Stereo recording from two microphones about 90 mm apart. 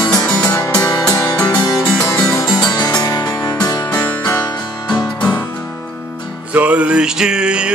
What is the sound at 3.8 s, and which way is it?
Music, 25° left (ahead or behind).